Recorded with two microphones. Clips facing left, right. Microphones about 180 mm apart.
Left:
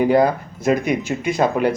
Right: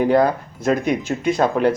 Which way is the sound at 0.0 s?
10° left (ahead or behind).